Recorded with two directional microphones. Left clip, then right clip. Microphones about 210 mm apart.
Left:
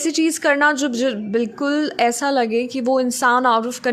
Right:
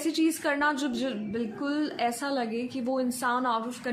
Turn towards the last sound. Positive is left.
turn(degrees=45)  # may be behind; listen again after turning